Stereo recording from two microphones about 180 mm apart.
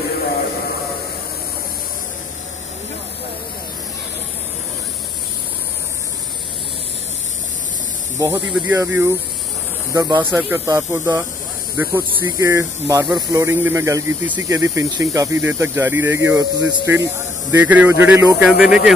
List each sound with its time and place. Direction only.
8.2 s speech: 15° right (ahead or behind)